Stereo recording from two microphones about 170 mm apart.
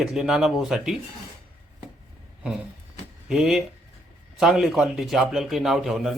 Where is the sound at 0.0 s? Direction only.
5° right (ahead or behind).